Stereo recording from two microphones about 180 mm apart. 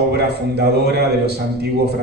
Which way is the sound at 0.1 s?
65° right (ahead or behind).